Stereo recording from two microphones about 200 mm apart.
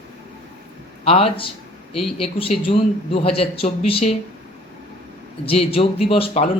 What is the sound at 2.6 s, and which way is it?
Speech, 30° left (ahead or behind).